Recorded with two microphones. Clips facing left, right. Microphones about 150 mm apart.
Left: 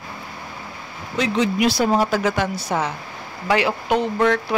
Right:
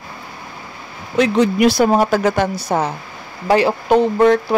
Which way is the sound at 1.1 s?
55° right (ahead or behind).